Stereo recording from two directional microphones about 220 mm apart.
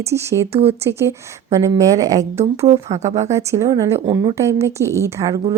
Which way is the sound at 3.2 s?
15° right (ahead or behind).